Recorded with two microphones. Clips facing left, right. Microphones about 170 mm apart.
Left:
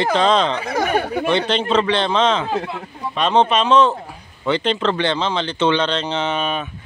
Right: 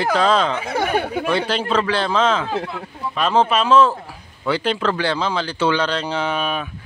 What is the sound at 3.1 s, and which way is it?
Speech, 5° right (ahead or behind).